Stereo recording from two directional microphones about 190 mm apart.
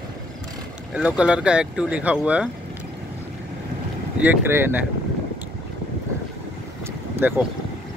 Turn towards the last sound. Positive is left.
turn(degrees=-10)  # may be behind; listen again after turning